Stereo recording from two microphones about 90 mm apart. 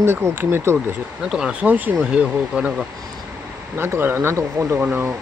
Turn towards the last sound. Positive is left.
turn(degrees=-20)  # may be behind; listen again after turning